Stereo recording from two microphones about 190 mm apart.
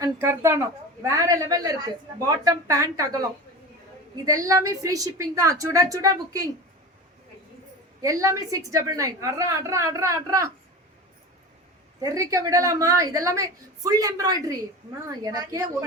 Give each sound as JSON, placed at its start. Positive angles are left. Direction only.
{"t": 0.0, "sound": "a woman's voice", "side_deg": -15}
{"t": 4.3, "sound": "a woman's voice", "side_deg": -15}
{"t": 8.0, "sound": "a woman's voice", "side_deg": -15}
{"t": 11.9, "sound": "a woman's voice", "side_deg": -15}